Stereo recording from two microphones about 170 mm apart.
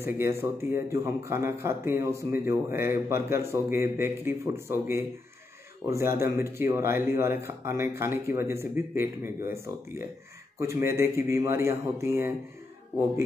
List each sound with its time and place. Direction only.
0.0 s speech: 15° right (ahead or behind)